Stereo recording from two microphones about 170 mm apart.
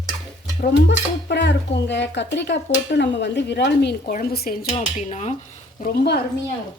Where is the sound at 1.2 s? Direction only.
90° left.